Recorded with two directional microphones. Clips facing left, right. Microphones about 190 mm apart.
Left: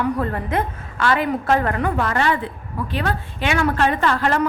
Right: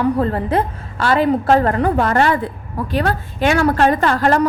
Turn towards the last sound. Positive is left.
turn(degrees=-40)  # may be behind; listen again after turning